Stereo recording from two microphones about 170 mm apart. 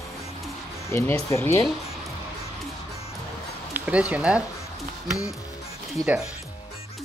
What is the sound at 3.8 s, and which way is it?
Speech, 10° right (ahead or behind).